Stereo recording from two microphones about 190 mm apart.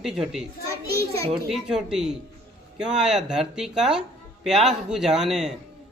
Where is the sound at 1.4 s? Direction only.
Centre (ahead or behind).